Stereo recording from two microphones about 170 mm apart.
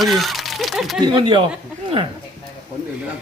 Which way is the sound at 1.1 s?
30° right (ahead or behind).